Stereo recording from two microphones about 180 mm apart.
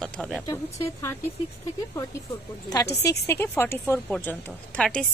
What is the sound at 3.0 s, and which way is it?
A woman's voice, 15° left (ahead or behind).